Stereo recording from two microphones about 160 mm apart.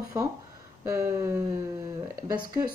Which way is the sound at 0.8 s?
20° right (ahead or behind).